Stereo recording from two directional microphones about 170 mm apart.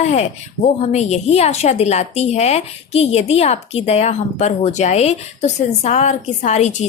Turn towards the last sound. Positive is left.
turn(degrees=40)  # may be behind; listen again after turning